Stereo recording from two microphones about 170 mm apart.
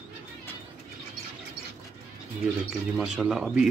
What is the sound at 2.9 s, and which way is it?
Speech, centre (ahead or behind).